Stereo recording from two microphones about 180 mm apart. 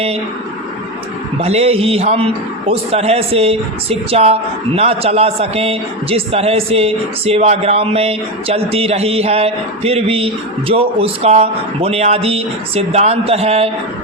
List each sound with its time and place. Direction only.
1.4 s a man's voice: 35° right (ahead or behind)